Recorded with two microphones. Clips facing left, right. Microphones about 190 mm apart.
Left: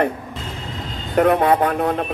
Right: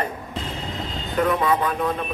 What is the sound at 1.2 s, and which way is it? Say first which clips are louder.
Speech: left 6 dB; 70° left (ahead or behind).